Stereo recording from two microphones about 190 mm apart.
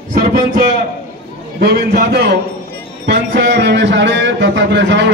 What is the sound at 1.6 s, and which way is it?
A man's voice, 60° right (ahead or behind).